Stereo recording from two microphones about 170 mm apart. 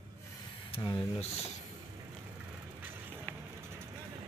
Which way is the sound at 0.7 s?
25° left (ahead or behind).